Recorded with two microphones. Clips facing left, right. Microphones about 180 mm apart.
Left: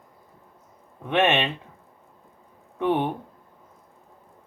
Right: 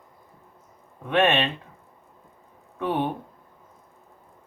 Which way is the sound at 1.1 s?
20° left (ahead or behind).